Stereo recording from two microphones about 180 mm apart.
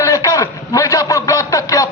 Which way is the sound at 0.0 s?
15° left (ahead or behind).